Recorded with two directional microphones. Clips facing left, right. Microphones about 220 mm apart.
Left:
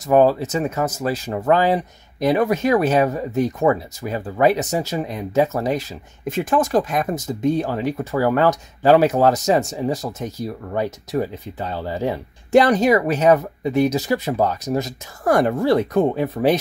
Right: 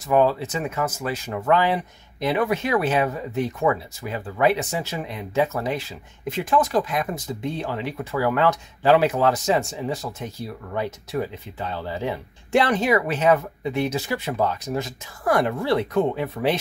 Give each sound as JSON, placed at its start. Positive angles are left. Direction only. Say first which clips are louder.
{"t": 0.1, "sound": "speech", "louder": "left 4 dB", "side_deg": 40}